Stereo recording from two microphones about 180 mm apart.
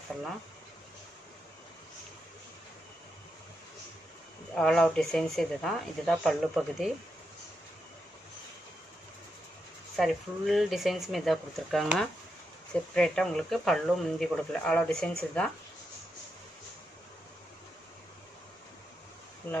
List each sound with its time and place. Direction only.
4.6 s speech: centre (ahead or behind)
9.9 s speech: centre (ahead or behind)
19.4 s speech: 10° left (ahead or behind)